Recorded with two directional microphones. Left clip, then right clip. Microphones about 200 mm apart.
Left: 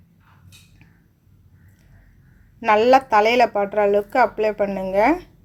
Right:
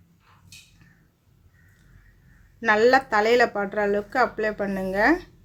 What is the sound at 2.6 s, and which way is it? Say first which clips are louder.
Speech: left 4 dB; 10° left (ahead or behind).